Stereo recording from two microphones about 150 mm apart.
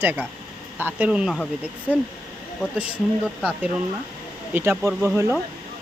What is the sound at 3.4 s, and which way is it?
Speech, 5° right (ahead or behind).